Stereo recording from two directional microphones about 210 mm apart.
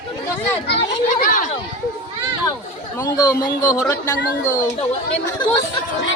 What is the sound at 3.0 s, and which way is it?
Speech, 20° left (ahead or behind).